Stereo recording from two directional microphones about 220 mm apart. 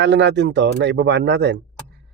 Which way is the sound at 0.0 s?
55° right (ahead or behind).